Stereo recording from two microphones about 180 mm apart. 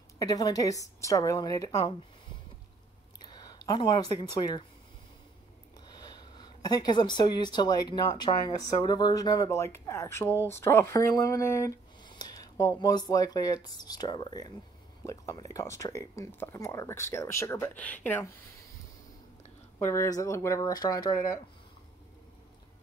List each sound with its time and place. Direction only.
0.2 s speech: 20° left (ahead or behind)
6.3 s speech: 25° left (ahead or behind)
19.8 s speech: 15° left (ahead or behind)